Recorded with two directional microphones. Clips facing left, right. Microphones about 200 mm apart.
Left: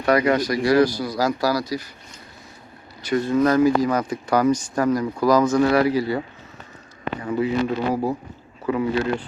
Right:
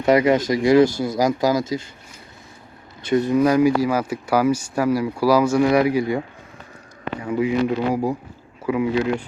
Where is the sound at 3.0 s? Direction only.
20° right (ahead or behind).